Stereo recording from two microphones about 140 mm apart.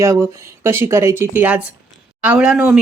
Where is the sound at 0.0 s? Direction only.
20° right (ahead or behind).